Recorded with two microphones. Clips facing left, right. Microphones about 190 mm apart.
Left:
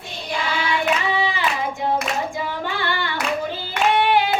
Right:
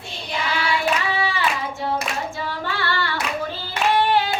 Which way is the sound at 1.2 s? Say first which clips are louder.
Left 1 dB; 15° left (ahead or behind).